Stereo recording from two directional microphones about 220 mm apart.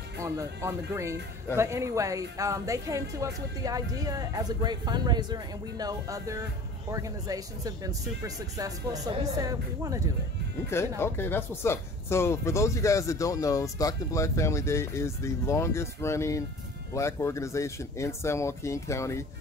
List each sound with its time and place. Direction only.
0.2 s speech: 15° right (ahead or behind)
10.7 s speech: 10° left (ahead or behind)